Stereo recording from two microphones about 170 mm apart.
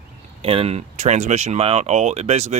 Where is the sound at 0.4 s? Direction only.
35° right (ahead or behind).